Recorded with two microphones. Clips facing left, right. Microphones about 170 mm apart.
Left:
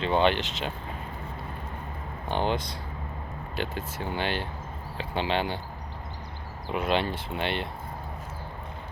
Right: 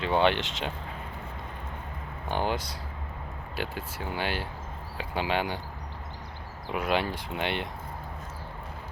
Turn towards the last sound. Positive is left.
turn(degrees=-15)  # may be behind; listen again after turning